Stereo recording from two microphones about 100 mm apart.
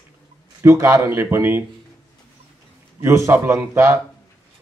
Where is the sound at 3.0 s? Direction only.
25° right (ahead or behind).